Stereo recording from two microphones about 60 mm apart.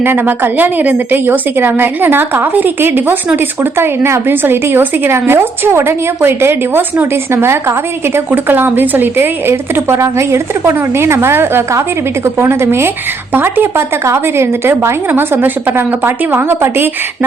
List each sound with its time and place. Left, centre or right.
0.0 s a woman's voice: right